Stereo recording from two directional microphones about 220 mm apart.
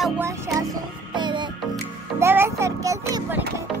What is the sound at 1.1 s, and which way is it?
Music, 20° right (ahead or behind).